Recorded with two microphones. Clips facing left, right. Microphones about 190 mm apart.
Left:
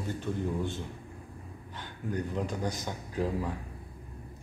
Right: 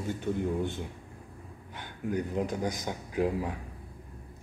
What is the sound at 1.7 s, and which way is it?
Speech, 10° right (ahead or behind).